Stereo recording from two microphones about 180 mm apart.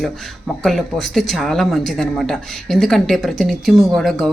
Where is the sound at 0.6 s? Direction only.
Centre (ahead or behind).